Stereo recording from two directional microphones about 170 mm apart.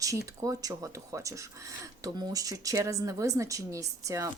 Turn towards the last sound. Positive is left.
turn(degrees=-20)  # may be behind; listen again after turning